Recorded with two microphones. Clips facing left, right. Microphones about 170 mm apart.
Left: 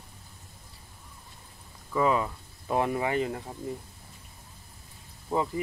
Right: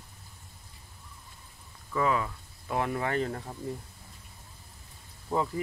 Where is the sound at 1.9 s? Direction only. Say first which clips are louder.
Left 3 dB; 20° left (ahead or behind).